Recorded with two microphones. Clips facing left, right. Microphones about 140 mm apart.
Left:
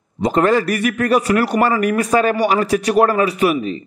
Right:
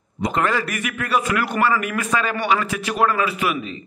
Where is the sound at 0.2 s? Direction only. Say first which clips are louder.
Left 7 dB; 35° left (ahead or behind).